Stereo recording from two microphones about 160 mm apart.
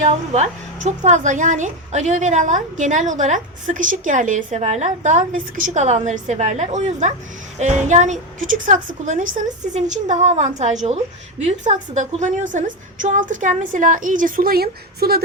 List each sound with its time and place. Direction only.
0.0 s a woman's voice: 45° right (ahead or behind); by 15.2 s 70° right (ahead or behind)